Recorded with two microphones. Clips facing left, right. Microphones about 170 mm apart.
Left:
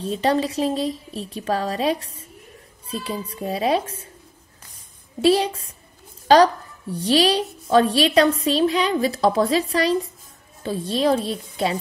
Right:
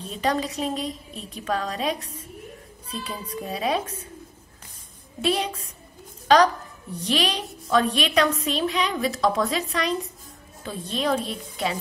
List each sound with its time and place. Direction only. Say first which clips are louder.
0.0 s a woman's voice: left 5 dB; 30° left (ahead or behind)
5.2 s a woman's voice: left 7 dB; 30° left (ahead or behind)